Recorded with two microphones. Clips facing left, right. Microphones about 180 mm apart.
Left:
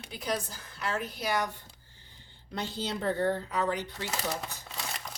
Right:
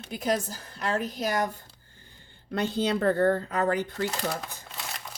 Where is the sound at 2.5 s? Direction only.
60° right (ahead or behind).